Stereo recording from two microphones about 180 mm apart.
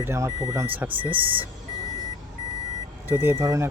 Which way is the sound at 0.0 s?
15° right (ahead or behind).